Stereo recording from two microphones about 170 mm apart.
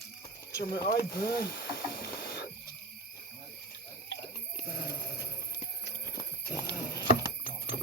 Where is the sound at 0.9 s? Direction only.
60° left (ahead or behind).